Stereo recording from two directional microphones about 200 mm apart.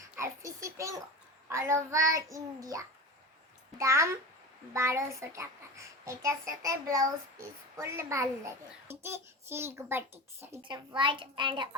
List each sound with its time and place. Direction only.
0.2 s a child's voice: 15° right (ahead or behind)
10.6 s a child's voice: 25° right (ahead or behind)